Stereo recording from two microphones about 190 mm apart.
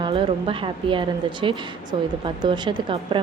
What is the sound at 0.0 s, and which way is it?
Speech, 30° right (ahead or behind).